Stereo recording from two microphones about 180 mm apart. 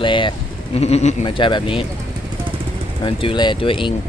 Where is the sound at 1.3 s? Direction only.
25° left (ahead or behind).